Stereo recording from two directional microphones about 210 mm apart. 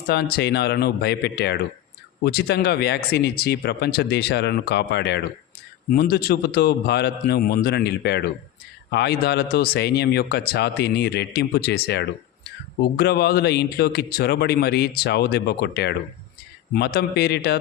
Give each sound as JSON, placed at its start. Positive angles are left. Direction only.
{"t": 0.1, "sound": "speech", "side_deg": 50}